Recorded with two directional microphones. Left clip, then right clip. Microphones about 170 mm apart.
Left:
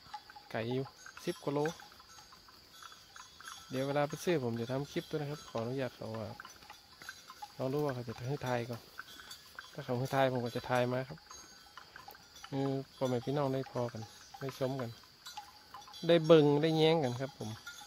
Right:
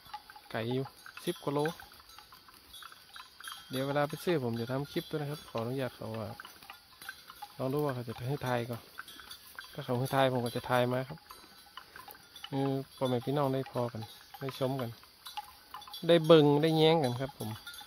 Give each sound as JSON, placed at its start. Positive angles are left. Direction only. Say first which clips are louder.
{"t": 0.1, "sound": "a sound", "louder": "right 2 dB", "side_deg": -40}
{"t": 0.5, "sound": "speech", "louder": "right 2 dB", "side_deg": -5}
{"t": 3.7, "sound": "speech", "louder": "right 2 dB", "side_deg": 0}
{"t": 7.5, "sound": "speech", "louder": "right 2 dB", "side_deg": -5}
{"t": 9.8, "sound": "speech", "louder": "right 2 dB", "side_deg": -5}
{"t": 12.4, "sound": "speech", "louder": "right 3 dB", "side_deg": -10}
{"t": 16.1, "sound": "speech", "louder": "right 2 dB", "side_deg": -5}